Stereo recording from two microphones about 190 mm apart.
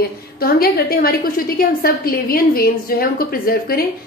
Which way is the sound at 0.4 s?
50° left (ahead or behind).